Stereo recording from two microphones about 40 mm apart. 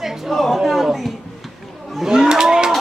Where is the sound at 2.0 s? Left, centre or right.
Centre.